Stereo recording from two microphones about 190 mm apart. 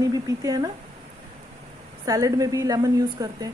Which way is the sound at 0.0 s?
20° right (ahead or behind).